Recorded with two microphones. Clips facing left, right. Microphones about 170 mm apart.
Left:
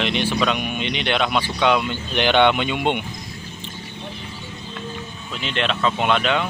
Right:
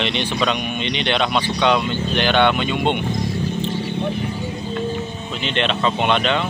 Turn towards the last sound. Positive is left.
turn(degrees=5)  # may be behind; listen again after turning